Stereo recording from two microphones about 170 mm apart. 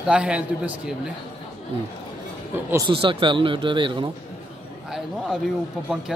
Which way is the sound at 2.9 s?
30° right (ahead or behind).